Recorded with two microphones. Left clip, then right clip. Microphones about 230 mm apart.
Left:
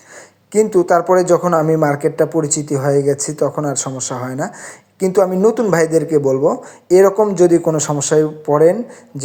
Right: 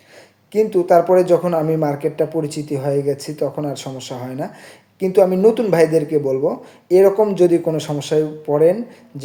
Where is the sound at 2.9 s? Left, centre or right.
Centre.